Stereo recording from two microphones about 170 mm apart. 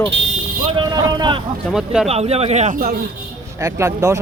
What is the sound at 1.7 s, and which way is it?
Speech, 5° right (ahead or behind).